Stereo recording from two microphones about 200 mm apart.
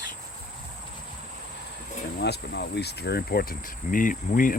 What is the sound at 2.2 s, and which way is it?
Speech, 55° left (ahead or behind).